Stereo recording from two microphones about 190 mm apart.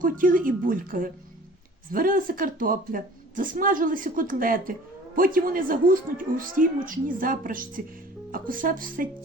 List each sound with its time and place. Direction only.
0.0 s a woman's voice: 45° right (ahead or behind)